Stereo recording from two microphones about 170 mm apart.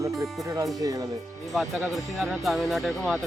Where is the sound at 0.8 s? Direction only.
20° right (ahead or behind).